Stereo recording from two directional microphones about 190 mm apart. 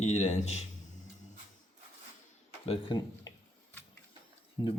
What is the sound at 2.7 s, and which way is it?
Speech, 25° left (ahead or behind).